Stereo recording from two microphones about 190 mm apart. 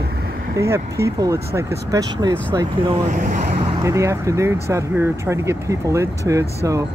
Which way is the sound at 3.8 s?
15° right (ahead or behind).